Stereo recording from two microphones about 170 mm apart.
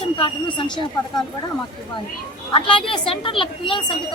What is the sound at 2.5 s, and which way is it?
A woman's voice, 30° left (ahead or behind).